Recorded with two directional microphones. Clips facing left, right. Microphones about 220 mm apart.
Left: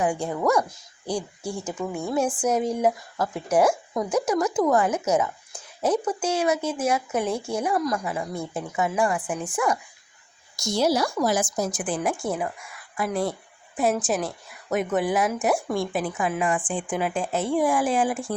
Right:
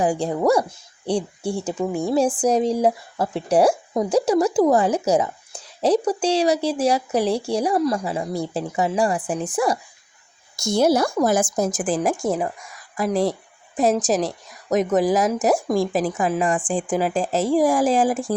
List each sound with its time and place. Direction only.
0.0 s speech: 35° right (ahead or behind)
10.6 s a woman's voice: 50° right (ahead or behind)